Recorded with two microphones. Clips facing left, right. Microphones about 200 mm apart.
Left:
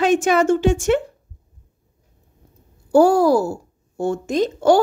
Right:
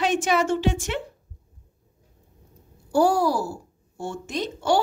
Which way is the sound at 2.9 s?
45° left (ahead or behind).